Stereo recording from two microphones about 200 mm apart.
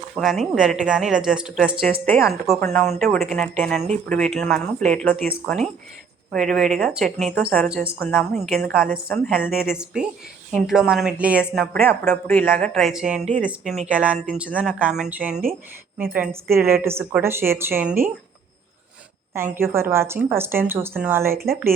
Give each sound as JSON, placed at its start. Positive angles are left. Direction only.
{"t": 0.2, "sound": "speech", "side_deg": 0}
{"t": 6.3, "sound": "speech", "side_deg": 0}
{"t": 8.7, "sound": "a woman's voice", "side_deg": -45}
{"t": 9.0, "sound": "speech", "side_deg": 5}
{"t": 11.8, "sound": "a woman's voice", "side_deg": 10}
{"t": 19.5, "sound": "a woman's voice", "side_deg": -10}